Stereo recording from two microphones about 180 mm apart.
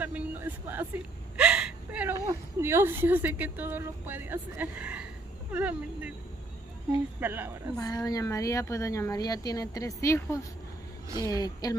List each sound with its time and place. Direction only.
0.0 s whimper: 10° right (ahead or behind)
2.6 s a woman's voice: 15° right (ahead or behind)
7.2 s a woman's voice: 10° right (ahead or behind)
7.7 s speech: 20° left (ahead or behind)